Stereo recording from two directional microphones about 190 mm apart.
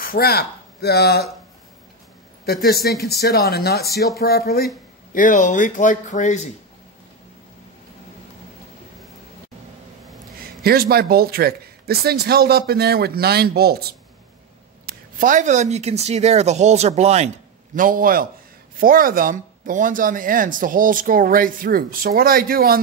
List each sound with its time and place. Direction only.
0.0 s speech: 50° left (ahead or behind)
2.4 s speech: 55° left (ahead or behind); by 6.5 s 40° left (ahead or behind)
10.4 s speech: 55° right (ahead or behind)
14.9 s speech: 45° right (ahead or behind)
17.7 s speech: 45° right (ahead or behind)